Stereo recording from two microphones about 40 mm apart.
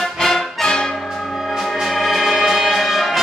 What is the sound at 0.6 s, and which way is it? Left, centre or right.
Brass instrument, centre.